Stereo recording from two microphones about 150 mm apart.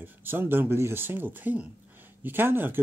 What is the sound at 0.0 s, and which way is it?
Speech, 15° right (ahead or behind).